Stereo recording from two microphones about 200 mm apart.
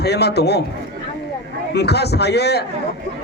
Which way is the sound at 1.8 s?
55° left (ahead or behind).